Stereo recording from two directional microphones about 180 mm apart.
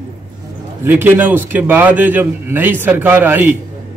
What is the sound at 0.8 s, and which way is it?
A man's voice, 10° right (ahead or behind).